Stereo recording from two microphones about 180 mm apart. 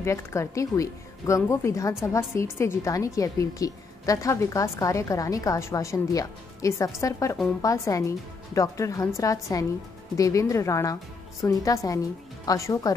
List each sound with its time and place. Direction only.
0.0 s a woman's voice: 15° left (ahead or behind)